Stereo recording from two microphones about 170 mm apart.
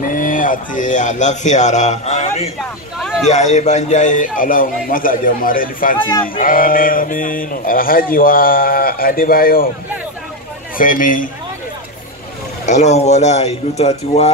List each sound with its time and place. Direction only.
0.1 s speech: 50° left (ahead or behind)
3.0 s a sound: centre (ahead or behind)
3.3 s a man's voice: 45° left (ahead or behind); by 9.7 s 60° left (ahead or behind)
10.8 s a man's voice: 55° left (ahead or behind)
12.6 s speech: 40° left (ahead or behind)